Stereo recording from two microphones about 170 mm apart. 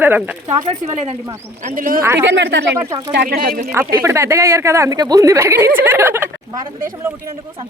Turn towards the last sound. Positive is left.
turn(degrees=-15)  # may be behind; listen again after turning